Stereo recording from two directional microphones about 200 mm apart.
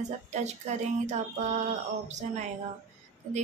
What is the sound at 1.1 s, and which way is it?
Speech, 35° right (ahead or behind).